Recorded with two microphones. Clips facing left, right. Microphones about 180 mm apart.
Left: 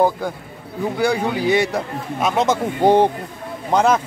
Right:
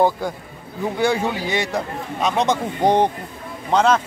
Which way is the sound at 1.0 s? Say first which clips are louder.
Left 2 dB; centre (ahead or behind).